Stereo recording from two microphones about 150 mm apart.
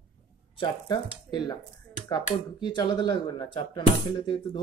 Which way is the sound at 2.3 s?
30° left (ahead or behind).